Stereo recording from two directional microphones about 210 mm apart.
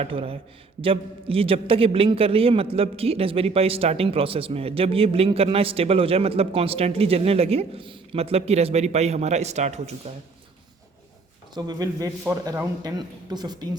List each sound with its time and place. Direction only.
0.0 s a man's voice: 25° right (ahead or behind)
11.5 s a man's voice: 20° right (ahead or behind)